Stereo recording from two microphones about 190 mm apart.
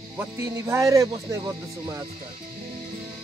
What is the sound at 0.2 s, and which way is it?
Speech, 15° right (ahead or behind).